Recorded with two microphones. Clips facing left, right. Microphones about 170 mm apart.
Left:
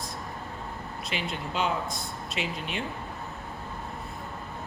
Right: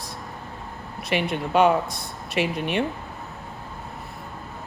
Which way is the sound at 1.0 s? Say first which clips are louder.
Right 10 dB; 65° right (ahead or behind).